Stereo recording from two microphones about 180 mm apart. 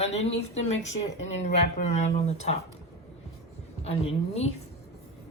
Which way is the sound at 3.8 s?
35° left (ahead or behind).